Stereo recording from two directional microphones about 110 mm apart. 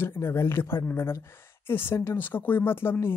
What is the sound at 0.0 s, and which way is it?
Speech, 20° left (ahead or behind).